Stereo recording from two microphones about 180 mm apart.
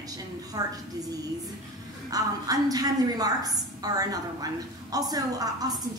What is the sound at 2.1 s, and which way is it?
A woman's voice, 20° right (ahead or behind).